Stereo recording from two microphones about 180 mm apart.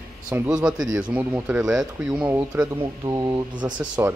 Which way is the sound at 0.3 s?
5° right (ahead or behind).